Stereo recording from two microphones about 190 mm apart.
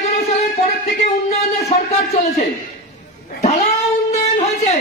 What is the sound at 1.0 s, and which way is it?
Music, 40° left (ahead or behind).